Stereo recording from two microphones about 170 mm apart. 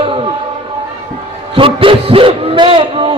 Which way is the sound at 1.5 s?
30° right (ahead or behind).